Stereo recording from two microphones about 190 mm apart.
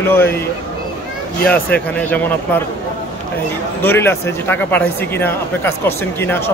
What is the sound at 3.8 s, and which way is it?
Speech, 10° left (ahead or behind).